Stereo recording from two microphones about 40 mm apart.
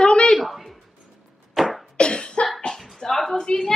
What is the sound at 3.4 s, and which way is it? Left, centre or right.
Speech, centre.